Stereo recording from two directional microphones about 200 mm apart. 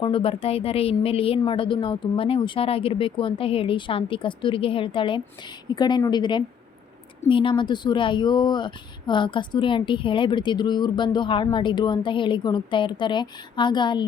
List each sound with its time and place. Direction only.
0.0 s a woman's voice: 25° left (ahead or behind)